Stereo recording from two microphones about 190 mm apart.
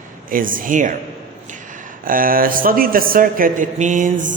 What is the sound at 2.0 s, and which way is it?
A man's voice, 45° right (ahead or behind).